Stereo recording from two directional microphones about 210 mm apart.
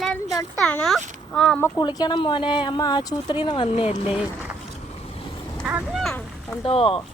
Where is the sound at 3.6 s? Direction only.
30° left (ahead or behind).